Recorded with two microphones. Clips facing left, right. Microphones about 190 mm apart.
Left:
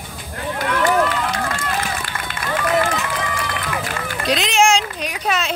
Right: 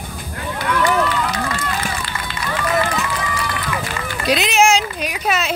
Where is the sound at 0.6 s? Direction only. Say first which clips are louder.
Even; 50° left (ahead or behind).